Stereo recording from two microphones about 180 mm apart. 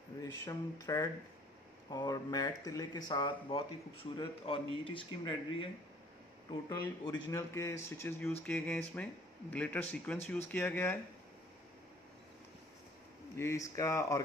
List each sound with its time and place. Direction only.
0.2 s speech: 20° left (ahead or behind)
6.7 s speech: 20° left (ahead or behind)
13.4 s speech: 15° left (ahead or behind)